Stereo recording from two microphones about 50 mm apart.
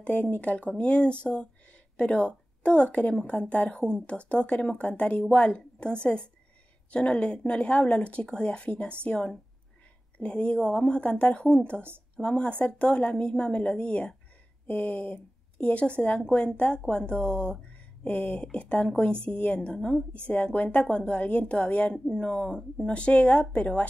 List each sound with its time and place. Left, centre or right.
0.0 s a woman's voice: left
11.1 s speech: left
12.2 s speech: left